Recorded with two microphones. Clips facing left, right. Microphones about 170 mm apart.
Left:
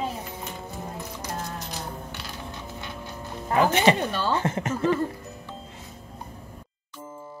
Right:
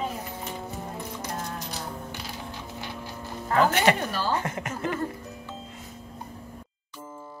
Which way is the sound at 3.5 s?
20° left (ahead or behind).